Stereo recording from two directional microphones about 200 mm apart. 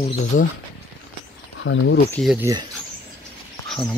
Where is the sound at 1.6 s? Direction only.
70° left (ahead or behind).